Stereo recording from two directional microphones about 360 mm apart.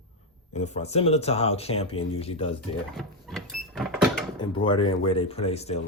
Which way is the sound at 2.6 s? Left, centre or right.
Centre.